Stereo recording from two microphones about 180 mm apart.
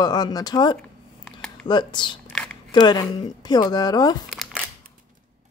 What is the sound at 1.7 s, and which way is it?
A woman's voice, 25° left (ahead or behind).